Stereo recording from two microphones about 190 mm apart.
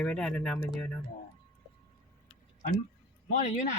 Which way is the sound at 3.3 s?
40° left (ahead or behind).